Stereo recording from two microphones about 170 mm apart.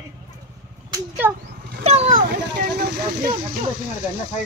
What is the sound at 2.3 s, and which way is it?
Vehicle, 75° right (ahead or behind).